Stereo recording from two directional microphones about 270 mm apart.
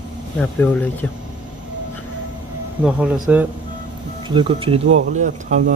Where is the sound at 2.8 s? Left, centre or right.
Centre.